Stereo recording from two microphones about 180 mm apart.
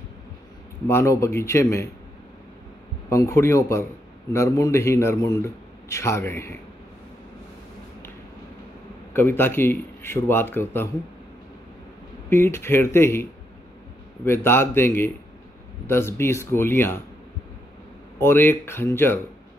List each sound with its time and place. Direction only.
0.8 s a man's voice: 15° left (ahead or behind)
3.1 s a man's voice: 15° left (ahead or behind)
9.1 s a man's voice: 10° left (ahead or behind)
12.3 s a man's voice: 15° left (ahead or behind)
18.2 s a man's voice: 10° left (ahead or behind)